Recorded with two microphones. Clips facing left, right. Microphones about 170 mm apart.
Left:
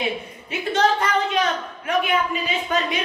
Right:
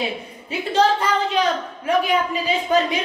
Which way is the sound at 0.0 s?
30° right (ahead or behind).